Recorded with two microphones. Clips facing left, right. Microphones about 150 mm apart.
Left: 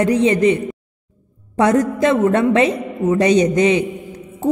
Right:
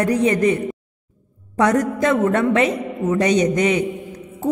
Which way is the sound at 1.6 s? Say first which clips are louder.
Left 3 dB; 25° left (ahead or behind).